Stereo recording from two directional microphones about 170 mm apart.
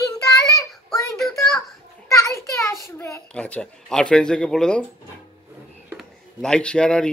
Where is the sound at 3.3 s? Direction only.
5° left (ahead or behind).